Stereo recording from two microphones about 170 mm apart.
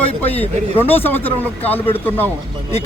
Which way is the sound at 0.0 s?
10° left (ahead or behind).